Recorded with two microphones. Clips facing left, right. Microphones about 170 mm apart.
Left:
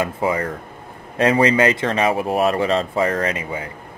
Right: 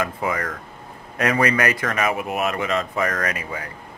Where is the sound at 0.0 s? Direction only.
30° left (ahead or behind).